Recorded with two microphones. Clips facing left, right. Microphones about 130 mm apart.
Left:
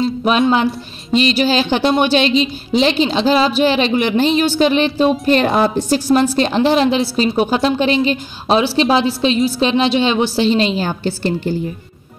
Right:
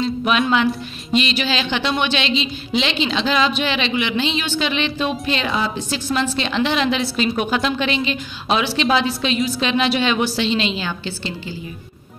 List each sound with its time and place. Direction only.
0.0 s a woman's voice: 35° left (ahead or behind)